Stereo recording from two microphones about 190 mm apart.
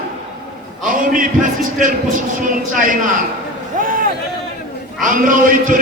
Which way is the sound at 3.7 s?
45° right (ahead or behind).